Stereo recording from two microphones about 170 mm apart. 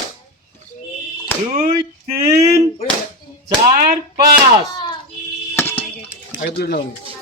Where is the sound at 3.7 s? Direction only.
60° right (ahead or behind).